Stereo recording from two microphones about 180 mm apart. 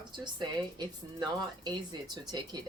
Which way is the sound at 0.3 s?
25° right (ahead or behind).